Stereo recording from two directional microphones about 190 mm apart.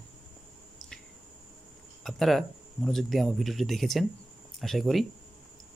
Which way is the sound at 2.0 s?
Centre (ahead or behind).